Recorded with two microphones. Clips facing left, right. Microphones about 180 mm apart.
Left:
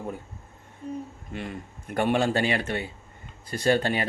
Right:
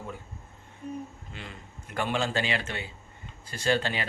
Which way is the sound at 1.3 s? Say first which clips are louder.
Left 9 dB; 50° left (ahead or behind).